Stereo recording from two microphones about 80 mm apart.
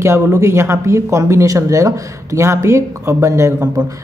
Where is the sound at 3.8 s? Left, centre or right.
Right.